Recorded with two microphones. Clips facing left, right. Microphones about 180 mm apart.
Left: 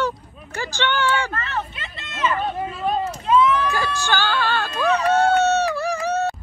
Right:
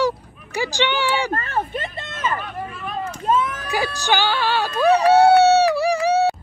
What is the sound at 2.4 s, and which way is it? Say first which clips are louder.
Vehicle: left 6 dB; 30° left (ahead or behind).